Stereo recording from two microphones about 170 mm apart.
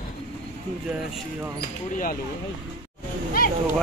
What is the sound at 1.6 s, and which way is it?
Speech, 55° left (ahead or behind).